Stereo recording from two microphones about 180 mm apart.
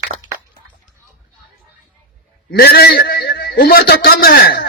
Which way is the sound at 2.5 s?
60° left (ahead or behind).